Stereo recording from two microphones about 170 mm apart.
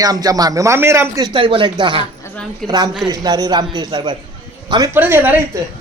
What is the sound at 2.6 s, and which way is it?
Speech, centre (ahead or behind).